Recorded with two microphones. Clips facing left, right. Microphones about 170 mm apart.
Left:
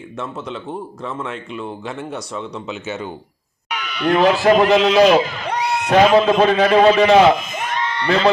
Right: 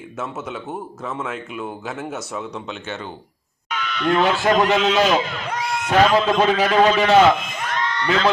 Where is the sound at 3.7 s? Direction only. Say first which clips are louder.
Left 2 dB; 10° left (ahead or behind).